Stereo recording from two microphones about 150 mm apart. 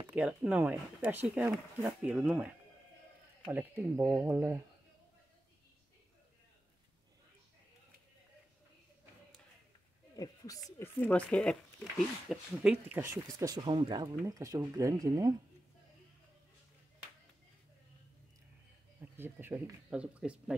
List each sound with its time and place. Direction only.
0.1 s speech: 10° right (ahead or behind)
10.1 s a sound: 25° left (ahead or behind)
10.8 s speech: 10° left (ahead or behind)
12.8 s speech: 15° right (ahead or behind)
18.9 s speech: 15° right (ahead or behind)